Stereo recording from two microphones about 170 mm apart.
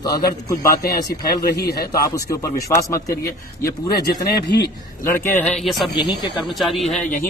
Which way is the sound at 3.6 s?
65° left (ahead or behind).